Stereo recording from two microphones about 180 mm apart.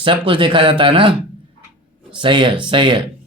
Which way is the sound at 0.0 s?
30° right (ahead or behind).